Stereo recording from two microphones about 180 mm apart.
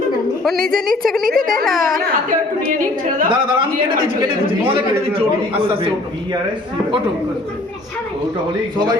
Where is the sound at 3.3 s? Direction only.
30° right (ahead or behind).